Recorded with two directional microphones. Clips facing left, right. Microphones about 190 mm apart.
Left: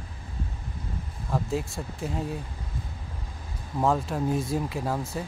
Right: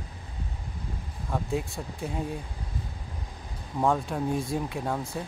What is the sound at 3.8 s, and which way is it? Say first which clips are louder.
Speech: left 1 dB; centre (ahead or behind).